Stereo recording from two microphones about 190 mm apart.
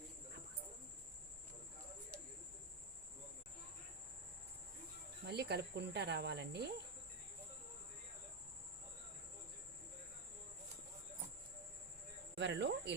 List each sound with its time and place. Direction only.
5.2 s speech: 60° right (ahead or behind)
12.4 s speech: 65° right (ahead or behind)